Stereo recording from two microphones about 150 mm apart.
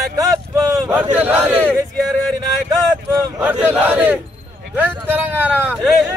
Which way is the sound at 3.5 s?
10° right (ahead or behind).